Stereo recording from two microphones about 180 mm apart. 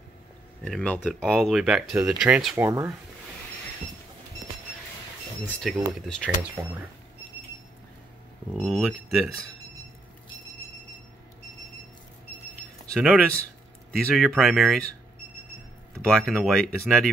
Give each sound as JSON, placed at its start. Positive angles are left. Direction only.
{"t": 0.7, "sound": "speech", "side_deg": 5}
{"t": 5.4, "sound": "speech", "side_deg": 5}
{"t": 6.6, "sound": "speech", "side_deg": -10}
{"t": 8.5, "sound": "speech", "side_deg": 5}
{"t": 12.9, "sound": "speech", "side_deg": 0}
{"t": 15.9, "sound": "speech", "side_deg": 5}